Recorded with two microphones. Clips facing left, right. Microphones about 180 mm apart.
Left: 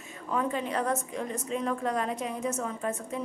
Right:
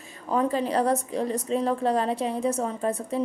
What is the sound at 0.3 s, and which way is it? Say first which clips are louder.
A woman's voice: right 5 dB; 35° right (ahead or behind).